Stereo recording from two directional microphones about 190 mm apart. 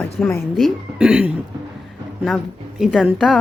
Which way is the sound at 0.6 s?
5° right (ahead or behind).